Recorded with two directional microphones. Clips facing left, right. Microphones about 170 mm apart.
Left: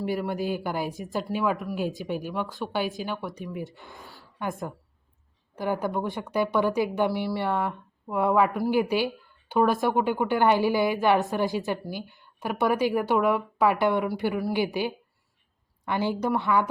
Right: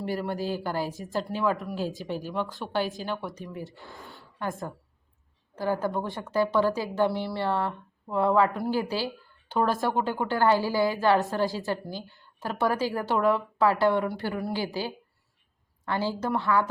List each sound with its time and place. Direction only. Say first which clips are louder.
0.0 s a woman's voice: left 2 dB; 5° left (ahead or behind)